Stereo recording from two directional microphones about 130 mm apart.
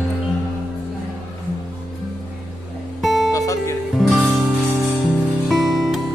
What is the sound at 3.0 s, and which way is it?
Music, centre (ahead or behind).